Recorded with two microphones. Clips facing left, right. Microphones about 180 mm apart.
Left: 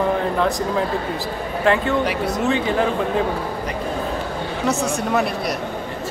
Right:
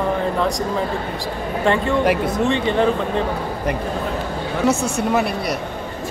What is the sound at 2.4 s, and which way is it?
Speech, 5° left (ahead or behind).